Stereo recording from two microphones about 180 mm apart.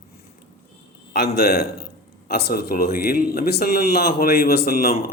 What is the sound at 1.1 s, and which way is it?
Speech, 60° left (ahead or behind).